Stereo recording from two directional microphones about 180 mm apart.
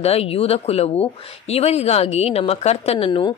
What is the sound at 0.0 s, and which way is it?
Speech, 35° left (ahead or behind).